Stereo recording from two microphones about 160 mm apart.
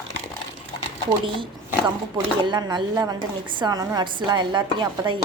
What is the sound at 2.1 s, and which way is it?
Speech, 25° right (ahead or behind).